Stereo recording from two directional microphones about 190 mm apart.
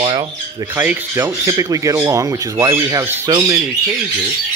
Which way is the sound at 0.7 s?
10° right (ahead or behind).